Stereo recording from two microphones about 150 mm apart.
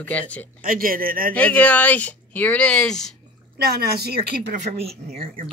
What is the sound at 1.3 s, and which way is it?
Speech, 10° left (ahead or behind).